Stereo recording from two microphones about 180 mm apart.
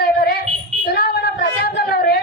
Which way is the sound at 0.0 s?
60° left (ahead or behind).